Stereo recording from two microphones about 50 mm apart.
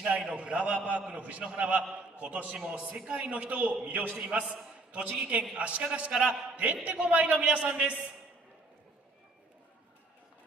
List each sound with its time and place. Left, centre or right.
0.0 s a man's voice: right